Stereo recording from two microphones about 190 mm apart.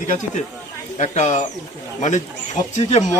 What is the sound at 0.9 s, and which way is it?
Speech, 35° left (ahead or behind).